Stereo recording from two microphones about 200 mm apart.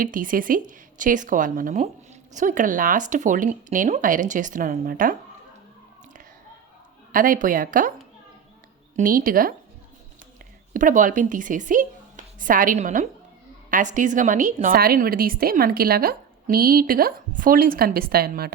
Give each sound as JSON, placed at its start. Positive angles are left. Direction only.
{"t": 0.0, "sound": "a woman's voice", "side_deg": -45}
{"t": 7.1, "sound": "a woman's voice", "side_deg": -45}
{"t": 9.0, "sound": "a woman's voice", "side_deg": -45}
{"t": 10.8, "sound": "a woman's voice", "side_deg": -40}